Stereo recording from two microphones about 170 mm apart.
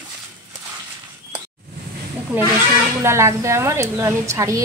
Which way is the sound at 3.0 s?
15° right (ahead or behind).